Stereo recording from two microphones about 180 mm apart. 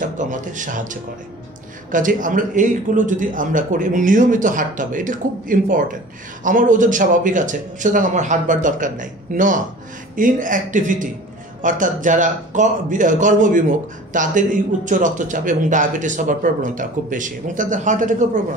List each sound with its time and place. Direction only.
0.0 s speech: 45° right (ahead or behind)